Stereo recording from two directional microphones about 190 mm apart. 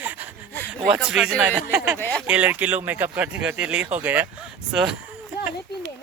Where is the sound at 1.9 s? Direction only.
10° left (ahead or behind).